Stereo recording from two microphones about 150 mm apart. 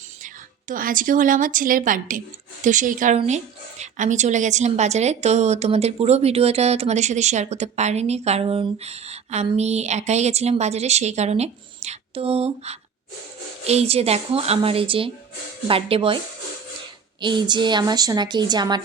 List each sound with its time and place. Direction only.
0.7 s a woman's voice: 65° right (ahead or behind)
3.2 s a woman's voice: 50° right (ahead or behind)
17.2 s a woman's voice: 30° right (ahead or behind)